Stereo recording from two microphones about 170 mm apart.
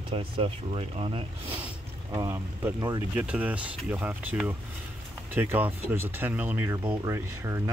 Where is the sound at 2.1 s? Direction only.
20° right (ahead or behind).